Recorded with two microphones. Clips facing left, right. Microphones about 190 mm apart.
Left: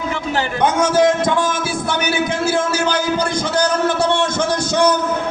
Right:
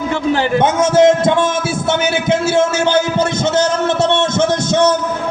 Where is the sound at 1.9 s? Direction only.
25° right (ahead or behind).